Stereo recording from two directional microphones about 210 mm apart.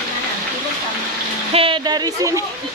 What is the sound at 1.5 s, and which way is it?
Speech, 25° right (ahead or behind).